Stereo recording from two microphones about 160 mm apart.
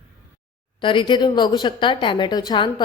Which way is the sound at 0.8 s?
30° left (ahead or behind).